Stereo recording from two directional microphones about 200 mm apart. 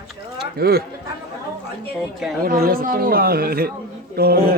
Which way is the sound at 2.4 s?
50° right (ahead or behind).